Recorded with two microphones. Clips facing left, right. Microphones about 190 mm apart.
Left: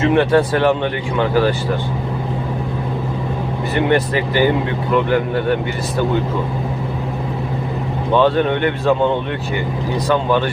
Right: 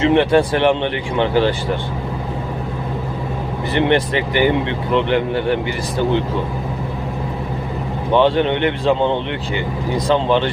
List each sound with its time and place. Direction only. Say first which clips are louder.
0.0 s speech: even; 25° right (ahead or behind)
3.8 s speech: even; 25° right (ahead or behind)
8.1 s speech: even; 20° right (ahead or behind)
10.1 s speech: right 1 dB; 25° right (ahead or behind)